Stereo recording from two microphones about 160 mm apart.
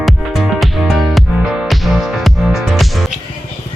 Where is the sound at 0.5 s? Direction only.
Centre (ahead or behind).